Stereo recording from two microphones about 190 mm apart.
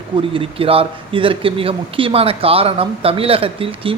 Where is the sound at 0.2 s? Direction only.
30° right (ahead or behind).